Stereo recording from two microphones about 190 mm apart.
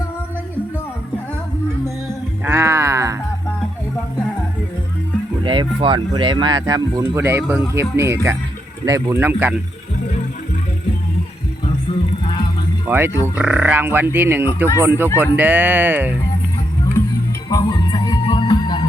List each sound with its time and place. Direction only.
2.4 s music: 15° right (ahead or behind)
5.4 s speech: 25° right (ahead or behind); by 9.6 s 10° right (ahead or behind)
13.3 s speech: 5° right (ahead or behind)
17.5 s music: 20° left (ahead or behind)